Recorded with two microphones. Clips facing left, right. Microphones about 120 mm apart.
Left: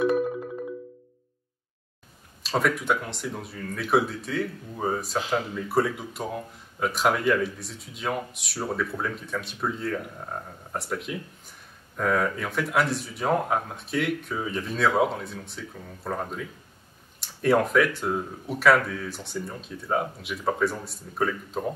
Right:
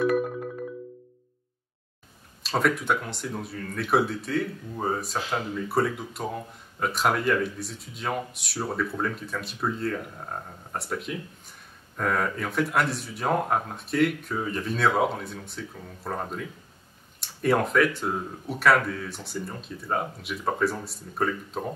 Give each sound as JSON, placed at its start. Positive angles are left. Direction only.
{"t": 2.4, "sound": "speech", "side_deg": 0}